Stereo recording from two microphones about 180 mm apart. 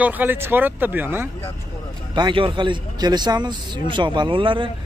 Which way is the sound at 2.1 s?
25° right (ahead or behind).